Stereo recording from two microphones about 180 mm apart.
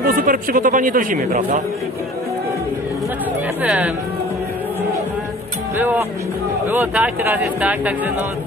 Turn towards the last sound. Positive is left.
turn(degrees=-10)  # may be behind; listen again after turning